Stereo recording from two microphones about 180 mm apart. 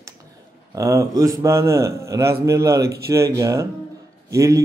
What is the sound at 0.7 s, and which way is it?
A man's voice, 20° right (ahead or behind).